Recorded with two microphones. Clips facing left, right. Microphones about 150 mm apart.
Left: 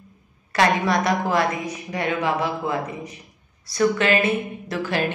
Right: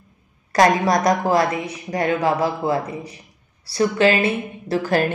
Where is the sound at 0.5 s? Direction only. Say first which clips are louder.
Right 4 dB; 40° right (ahead or behind).